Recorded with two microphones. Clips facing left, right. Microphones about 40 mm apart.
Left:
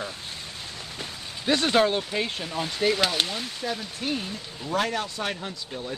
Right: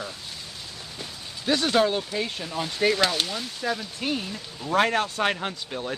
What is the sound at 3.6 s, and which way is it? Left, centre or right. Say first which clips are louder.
Speech: right 3 dB; right.